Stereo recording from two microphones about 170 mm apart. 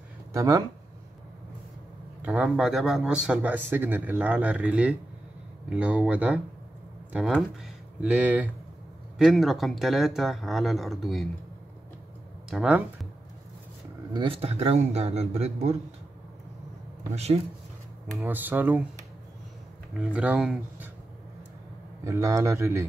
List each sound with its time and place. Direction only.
0.3 s speech: 20° right (ahead or behind)
2.2 s speech: 5° right (ahead or behind)
12.4 s speech: 5° right (ahead or behind)
14.1 s a man's voice: 30° right (ahead or behind)
17.1 s a man's voice: 40° right (ahead or behind)
18.2 s speech: 10° right (ahead or behind)
20.0 s speech: 5° right (ahead or behind)
22.0 s speech: 20° right (ahead or behind)